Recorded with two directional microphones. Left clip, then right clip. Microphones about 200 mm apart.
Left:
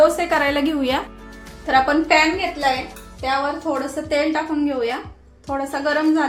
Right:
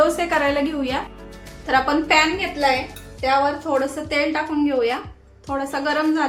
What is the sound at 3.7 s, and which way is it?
Speech, centre (ahead or behind).